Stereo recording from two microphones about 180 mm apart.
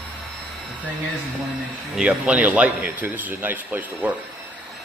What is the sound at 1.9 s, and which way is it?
Speech, 5° right (ahead or behind).